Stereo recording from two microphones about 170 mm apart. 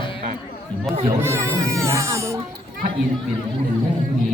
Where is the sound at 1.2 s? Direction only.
15° right (ahead or behind).